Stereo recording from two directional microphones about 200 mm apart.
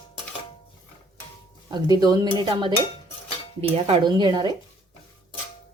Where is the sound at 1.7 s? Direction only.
20° right (ahead or behind).